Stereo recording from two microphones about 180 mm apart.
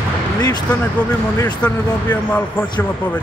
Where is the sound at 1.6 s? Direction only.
10° left (ahead or behind).